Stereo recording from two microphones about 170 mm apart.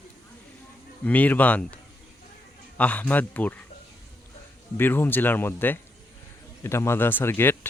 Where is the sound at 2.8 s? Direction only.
10° left (ahead or behind).